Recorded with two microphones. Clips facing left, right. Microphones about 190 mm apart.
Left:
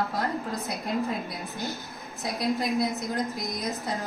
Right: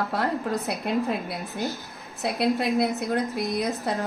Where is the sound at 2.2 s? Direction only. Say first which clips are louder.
Right 4 dB; 65° right (ahead or behind).